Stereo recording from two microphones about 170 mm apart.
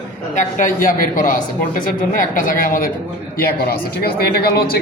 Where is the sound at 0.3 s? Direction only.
50° left (ahead or behind).